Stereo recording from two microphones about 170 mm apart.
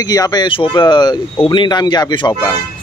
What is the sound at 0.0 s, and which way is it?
Speech, 20° left (ahead or behind).